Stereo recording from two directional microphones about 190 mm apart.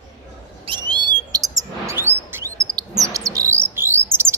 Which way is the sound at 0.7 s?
25° right (ahead or behind).